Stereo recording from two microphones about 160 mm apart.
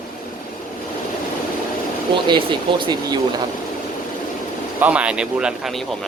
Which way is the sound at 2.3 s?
30° right (ahead or behind).